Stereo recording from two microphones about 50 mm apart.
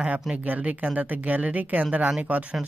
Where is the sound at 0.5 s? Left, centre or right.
Right.